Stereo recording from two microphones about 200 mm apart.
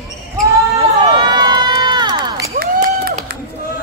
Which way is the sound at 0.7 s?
20° right (ahead or behind).